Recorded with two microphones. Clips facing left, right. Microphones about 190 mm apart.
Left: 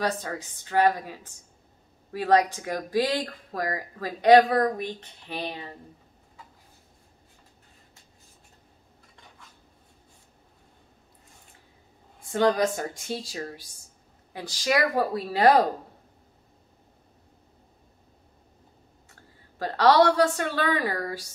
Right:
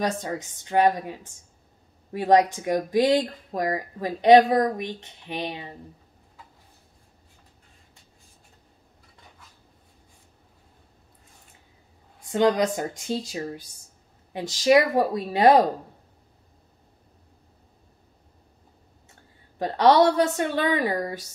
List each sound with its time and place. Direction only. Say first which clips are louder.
0.0 s speech: right 2 dB; 20° right (ahead or behind)
2.1 s speech: right 3 dB; 20° right (ahead or behind)
12.3 s speech: right 2 dB; 20° right (ahead or behind)
19.6 s speech: right 2 dB; 20° right (ahead or behind)